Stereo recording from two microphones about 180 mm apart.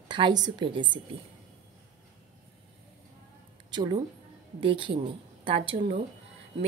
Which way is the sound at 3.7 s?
25° right (ahead or behind).